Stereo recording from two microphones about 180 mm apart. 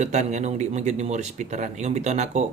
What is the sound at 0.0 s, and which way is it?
Speech, 40° right (ahead or behind).